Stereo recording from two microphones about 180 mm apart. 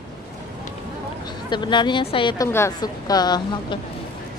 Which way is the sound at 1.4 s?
25° left (ahead or behind).